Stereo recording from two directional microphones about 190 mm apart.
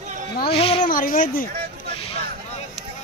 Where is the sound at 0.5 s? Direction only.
30° left (ahead or behind).